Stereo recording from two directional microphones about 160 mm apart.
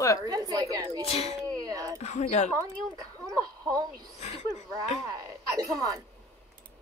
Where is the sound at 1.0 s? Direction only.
40° left (ahead or behind).